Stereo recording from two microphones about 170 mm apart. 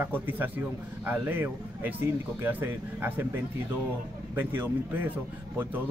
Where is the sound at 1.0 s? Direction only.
10° right (ahead or behind).